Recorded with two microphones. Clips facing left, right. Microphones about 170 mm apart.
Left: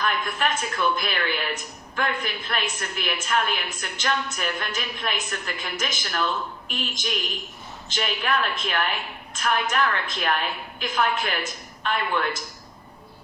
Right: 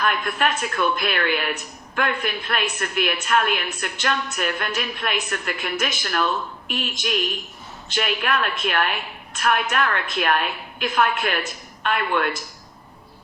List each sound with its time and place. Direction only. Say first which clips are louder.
0.0 s a woman's voice: right 3 dB; 60° right (ahead or behind)